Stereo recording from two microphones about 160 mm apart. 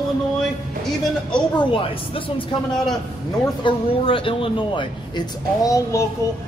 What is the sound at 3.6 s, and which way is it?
Speech, 35° left (ahead or behind).